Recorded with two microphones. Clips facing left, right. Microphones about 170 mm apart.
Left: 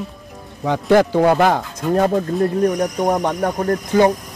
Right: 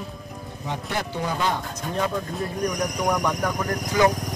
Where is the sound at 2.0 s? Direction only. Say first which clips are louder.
Left 9 dB; 50° left (ahead or behind).